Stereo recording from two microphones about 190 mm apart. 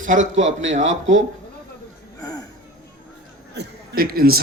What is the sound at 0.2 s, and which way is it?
Speech, 85° right.